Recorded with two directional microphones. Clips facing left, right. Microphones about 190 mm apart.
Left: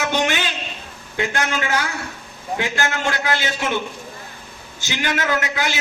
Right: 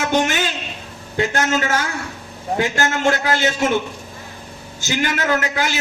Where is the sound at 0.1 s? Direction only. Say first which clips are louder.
Right 3 dB; 45° right (ahead or behind).